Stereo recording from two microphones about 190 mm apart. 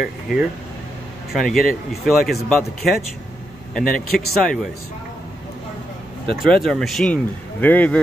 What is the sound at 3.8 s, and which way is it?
Speech, 45° left (ahead or behind).